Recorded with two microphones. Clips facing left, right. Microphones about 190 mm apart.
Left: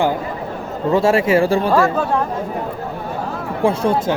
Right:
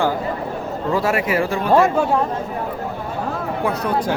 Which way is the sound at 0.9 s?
25° left (ahead or behind).